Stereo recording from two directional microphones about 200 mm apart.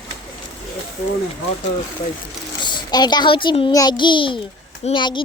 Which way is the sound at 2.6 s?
20° left (ahead or behind).